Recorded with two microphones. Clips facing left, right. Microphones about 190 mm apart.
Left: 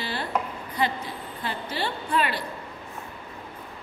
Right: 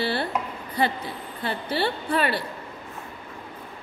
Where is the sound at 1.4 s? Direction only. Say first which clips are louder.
Right 5 dB; 30° right (ahead or behind).